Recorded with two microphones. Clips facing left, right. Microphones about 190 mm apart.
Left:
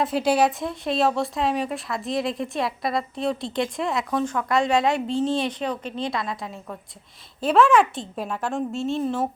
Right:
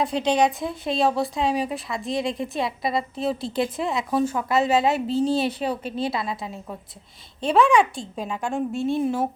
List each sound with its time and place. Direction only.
0.0 s speech: 5° left (ahead or behind)
8.7 s a woman's voice: 55° right (ahead or behind)
9.0 s speech: 10° right (ahead or behind)